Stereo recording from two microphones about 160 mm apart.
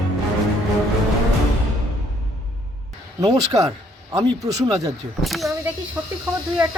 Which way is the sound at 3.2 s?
25° right (ahead or behind).